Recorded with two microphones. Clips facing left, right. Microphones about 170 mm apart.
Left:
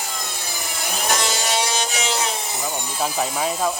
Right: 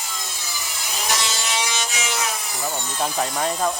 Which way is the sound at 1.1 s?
45° left (ahead or behind).